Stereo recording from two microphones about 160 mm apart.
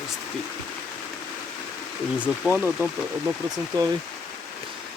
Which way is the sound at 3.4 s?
25° right (ahead or behind).